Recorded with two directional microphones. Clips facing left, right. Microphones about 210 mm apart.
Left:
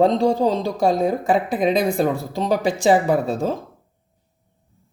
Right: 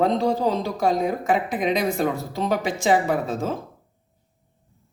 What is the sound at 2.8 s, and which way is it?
Speech, 35° left (ahead or behind).